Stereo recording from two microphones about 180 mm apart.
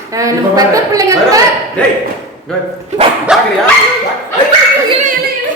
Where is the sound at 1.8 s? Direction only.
5° left (ahead or behind).